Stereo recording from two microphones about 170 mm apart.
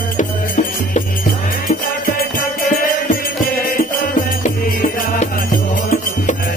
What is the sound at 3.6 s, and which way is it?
Music, 55° left (ahead or behind).